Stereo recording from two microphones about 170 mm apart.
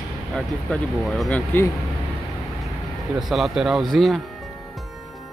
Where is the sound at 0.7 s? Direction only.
5° left (ahead or behind).